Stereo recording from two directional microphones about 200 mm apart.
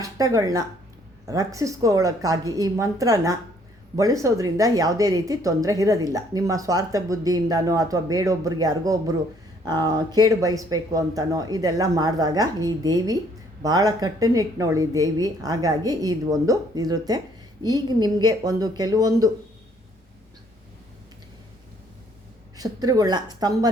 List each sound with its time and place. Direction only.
0.0 s a woman's voice: 15° right (ahead or behind)
22.5 s speech: 20° right (ahead or behind)